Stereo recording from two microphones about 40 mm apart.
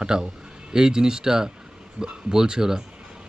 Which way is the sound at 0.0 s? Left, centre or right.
Centre.